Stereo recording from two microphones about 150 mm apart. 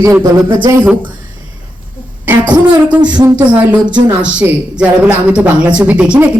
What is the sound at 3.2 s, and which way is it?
Speech, 30° right (ahead or behind).